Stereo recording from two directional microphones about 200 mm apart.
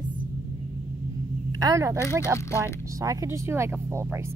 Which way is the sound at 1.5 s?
15° right (ahead or behind).